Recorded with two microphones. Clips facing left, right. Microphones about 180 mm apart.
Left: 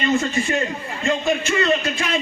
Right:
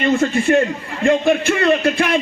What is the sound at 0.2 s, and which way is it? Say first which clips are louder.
A man's voice: right 7 dB; 55° right (ahead or behind).